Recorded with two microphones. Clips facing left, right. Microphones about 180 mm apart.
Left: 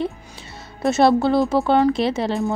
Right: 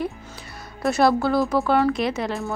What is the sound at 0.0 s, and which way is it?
Music, 25° left (ahead or behind).